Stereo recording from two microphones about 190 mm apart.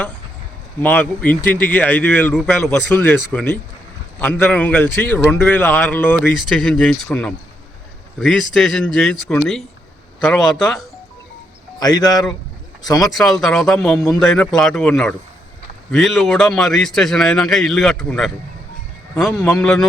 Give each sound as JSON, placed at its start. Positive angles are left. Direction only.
{"t": 0.8, "sound": "a man's voice", "side_deg": 10}
{"t": 11.8, "sound": "a man's voice", "side_deg": 20}
{"t": 13.1, "sound": "a man's voice", "side_deg": 0}